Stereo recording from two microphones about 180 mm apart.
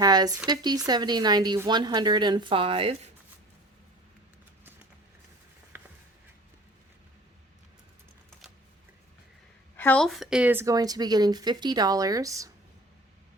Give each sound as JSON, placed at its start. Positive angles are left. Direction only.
{"t": 0.0, "sound": "a woman's voice", "side_deg": -20}
{"t": 5.7, "sound": "music", "side_deg": -10}
{"t": 9.7, "sound": "a woman's voice", "side_deg": 10}